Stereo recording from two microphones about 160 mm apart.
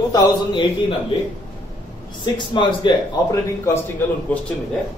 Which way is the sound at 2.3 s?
30° left (ahead or behind).